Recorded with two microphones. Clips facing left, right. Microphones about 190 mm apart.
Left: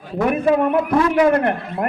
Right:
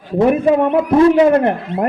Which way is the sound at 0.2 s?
25° right (ahead or behind).